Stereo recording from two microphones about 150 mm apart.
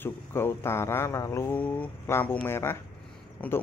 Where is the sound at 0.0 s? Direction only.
15° left (ahead or behind).